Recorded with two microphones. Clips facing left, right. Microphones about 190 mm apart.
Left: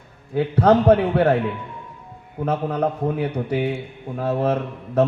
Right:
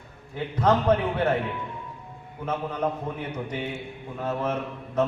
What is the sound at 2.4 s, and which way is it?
A man's voice, 60° left (ahead or behind).